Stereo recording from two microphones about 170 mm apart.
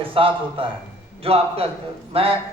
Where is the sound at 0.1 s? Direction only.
30° right (ahead or behind).